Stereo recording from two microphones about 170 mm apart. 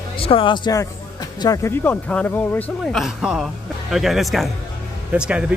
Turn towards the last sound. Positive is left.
turn(degrees=-5)  # may be behind; listen again after turning